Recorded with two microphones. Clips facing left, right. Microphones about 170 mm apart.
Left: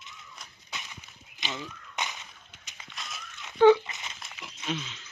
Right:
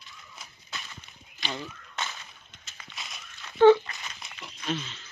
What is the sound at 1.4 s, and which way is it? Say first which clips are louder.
Walk: right 2 dB; 20° left (ahead or behind).